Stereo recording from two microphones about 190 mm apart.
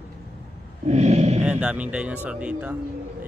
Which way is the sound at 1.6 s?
5° right (ahead or behind).